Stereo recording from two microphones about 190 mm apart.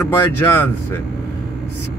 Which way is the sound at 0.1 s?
10° left (ahead or behind).